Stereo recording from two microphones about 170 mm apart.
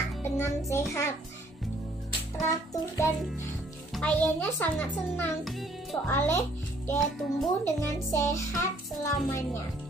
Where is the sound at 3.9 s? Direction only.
5° left (ahead or behind).